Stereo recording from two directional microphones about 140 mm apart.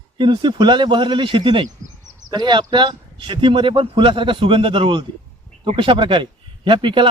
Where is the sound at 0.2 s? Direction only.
35° right (ahead or behind).